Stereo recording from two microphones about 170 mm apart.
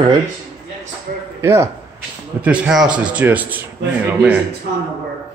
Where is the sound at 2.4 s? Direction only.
5° right (ahead or behind).